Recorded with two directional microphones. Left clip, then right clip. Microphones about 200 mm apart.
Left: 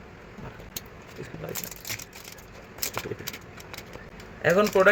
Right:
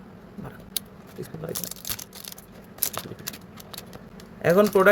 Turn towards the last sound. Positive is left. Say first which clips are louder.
# right 2 dB
turn(degrees=-45)  # may be behind; listen again after turning